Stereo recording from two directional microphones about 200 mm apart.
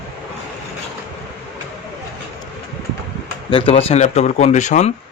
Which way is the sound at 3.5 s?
25° left (ahead or behind).